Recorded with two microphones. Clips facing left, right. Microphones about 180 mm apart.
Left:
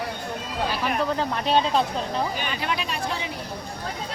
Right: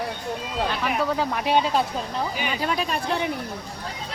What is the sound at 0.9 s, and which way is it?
Speech, 5° right (ahead or behind).